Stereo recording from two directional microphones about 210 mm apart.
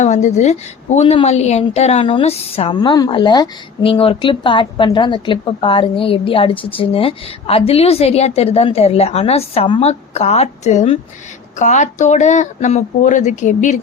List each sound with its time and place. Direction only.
0.0 s a woman's voice: 35° left (ahead or behind)